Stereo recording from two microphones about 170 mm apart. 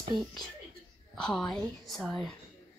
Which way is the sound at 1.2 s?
5° left (ahead or behind).